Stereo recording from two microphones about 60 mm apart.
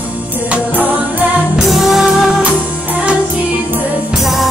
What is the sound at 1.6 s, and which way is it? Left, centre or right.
Music, centre.